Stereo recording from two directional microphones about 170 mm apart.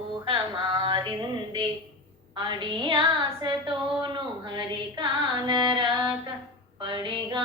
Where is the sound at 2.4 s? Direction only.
30° right (ahead or behind).